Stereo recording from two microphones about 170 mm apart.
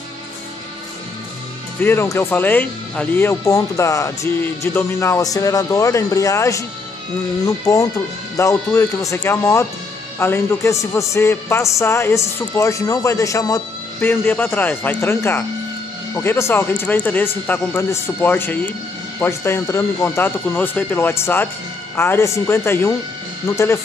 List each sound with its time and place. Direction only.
1.8 s speech: 15° left (ahead or behind)